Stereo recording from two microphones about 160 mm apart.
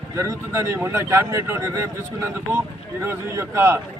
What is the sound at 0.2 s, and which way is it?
A man's voice, 15° right (ahead or behind).